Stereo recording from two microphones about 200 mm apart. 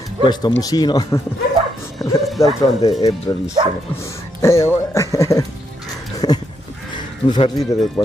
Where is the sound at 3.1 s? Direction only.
20° left (ahead or behind).